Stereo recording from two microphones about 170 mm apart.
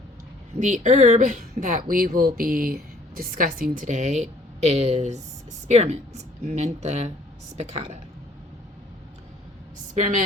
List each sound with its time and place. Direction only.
0.6 s a woman's voice: 45° right (ahead or behind)
9.9 s a woman's voice: 50° right (ahead or behind)